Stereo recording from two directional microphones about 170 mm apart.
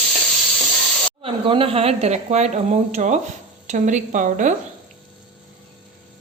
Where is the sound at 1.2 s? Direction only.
30° right (ahead or behind); by 4.5 s 50° right (ahead or behind).